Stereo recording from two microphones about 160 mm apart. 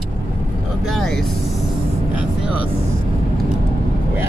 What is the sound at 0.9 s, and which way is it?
Speech, centre (ahead or behind).